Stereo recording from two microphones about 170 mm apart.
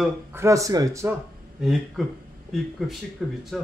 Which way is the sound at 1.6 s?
Centre (ahead or behind).